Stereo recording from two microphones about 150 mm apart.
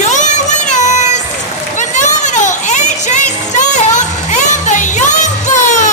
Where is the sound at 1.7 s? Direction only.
55° left (ahead or behind).